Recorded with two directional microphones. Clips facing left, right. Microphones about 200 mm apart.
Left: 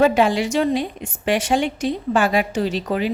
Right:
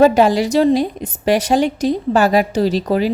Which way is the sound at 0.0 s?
40° right (ahead or behind).